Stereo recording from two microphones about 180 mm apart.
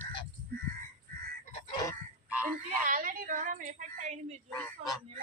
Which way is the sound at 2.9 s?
50° right (ahead or behind).